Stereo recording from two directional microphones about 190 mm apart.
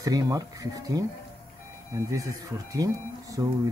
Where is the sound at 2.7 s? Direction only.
20° right (ahead or behind).